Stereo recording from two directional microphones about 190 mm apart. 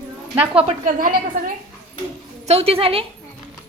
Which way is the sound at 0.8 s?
50° right (ahead or behind).